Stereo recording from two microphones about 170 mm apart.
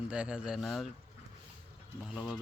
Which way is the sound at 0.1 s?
5° right (ahead or behind).